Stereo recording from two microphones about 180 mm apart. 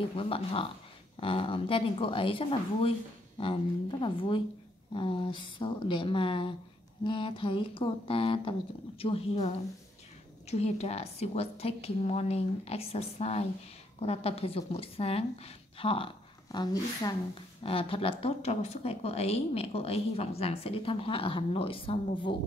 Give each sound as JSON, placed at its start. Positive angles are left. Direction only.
{"t": 0.1, "sound": "speech", "side_deg": 30}
{"t": 10.5, "sound": "speech", "side_deg": 35}